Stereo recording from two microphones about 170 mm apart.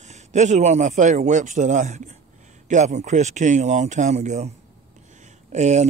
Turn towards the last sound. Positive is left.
turn(degrees=-40)  # may be behind; listen again after turning